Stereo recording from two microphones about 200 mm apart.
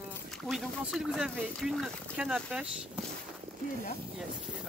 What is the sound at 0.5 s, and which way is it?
Speech, centre (ahead or behind).